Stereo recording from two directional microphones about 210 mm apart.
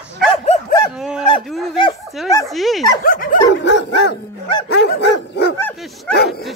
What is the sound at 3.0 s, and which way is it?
Dog, 40° left (ahead or behind).